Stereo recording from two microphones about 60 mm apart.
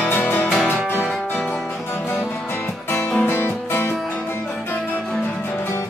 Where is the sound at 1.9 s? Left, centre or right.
Left.